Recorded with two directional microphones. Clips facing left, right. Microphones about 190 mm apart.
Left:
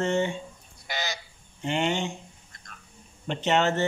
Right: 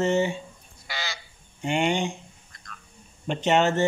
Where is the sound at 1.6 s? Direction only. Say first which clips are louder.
Right 2 dB; 15° right (ahead or behind).